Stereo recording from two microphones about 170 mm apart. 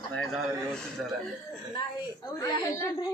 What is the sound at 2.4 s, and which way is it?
Speech, 20° left (ahead or behind).